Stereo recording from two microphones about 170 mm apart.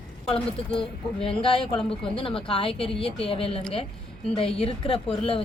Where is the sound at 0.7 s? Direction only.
30° left (ahead or behind).